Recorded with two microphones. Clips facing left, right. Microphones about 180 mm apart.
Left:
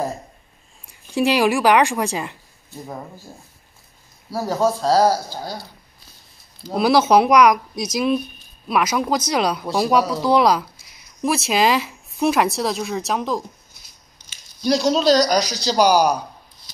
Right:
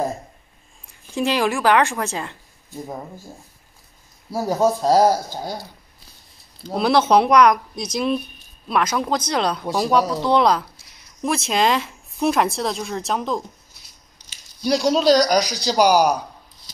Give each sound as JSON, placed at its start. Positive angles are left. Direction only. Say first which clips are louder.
{"t": 1.1, "sound": "speech", "louder": "left 3 dB", "side_deg": 10}
{"t": 4.3, "sound": "speech", "louder": "right 1 dB", "side_deg": -15}
{"t": 6.7, "sound": "speech", "louder": "left 1 dB", "side_deg": 5}
{"t": 14.6, "sound": "speech", "louder": "even", "side_deg": -10}